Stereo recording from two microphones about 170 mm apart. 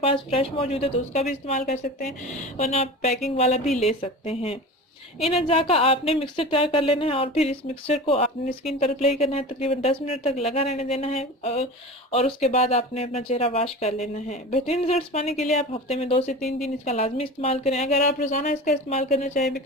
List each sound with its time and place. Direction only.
0.0 s speech: 35° left (ahead or behind)